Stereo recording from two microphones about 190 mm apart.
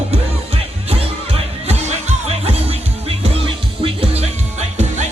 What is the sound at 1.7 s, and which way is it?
Music, 35° right (ahead or behind).